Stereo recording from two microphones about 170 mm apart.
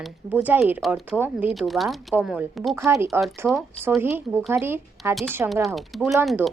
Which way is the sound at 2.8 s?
15° right (ahead or behind).